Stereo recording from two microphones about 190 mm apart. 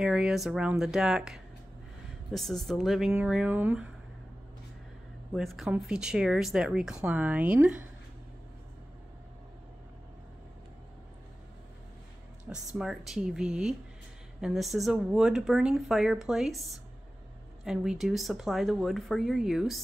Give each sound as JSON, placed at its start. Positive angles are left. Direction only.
{"t": 0.0, "sound": "speech", "side_deg": -5}
{"t": 5.3, "sound": "speech", "side_deg": 0}
{"t": 12.7, "sound": "speech", "side_deg": 0}